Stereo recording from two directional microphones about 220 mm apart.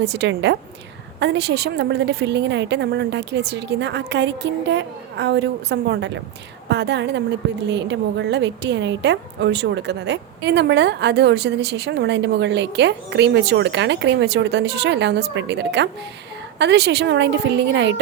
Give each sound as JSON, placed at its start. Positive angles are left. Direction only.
{"t": 0.0, "sound": "a woman's voice", "side_deg": -50}